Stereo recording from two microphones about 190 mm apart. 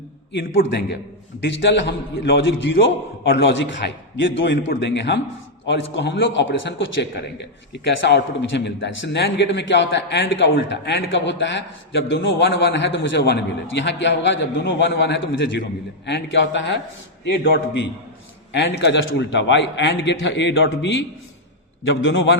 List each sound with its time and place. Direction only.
0.3 s a man's voice: 70° left (ahead or behind)
10.5 s a man's voice: 60° left (ahead or behind)
18.5 s a man's voice: 65° left (ahead or behind)